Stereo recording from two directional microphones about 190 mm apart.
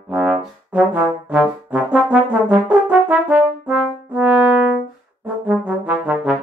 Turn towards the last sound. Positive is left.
turn(degrees=-5)  # may be behind; listen again after turning